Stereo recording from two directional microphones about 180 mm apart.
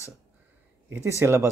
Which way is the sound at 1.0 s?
15° right (ahead or behind).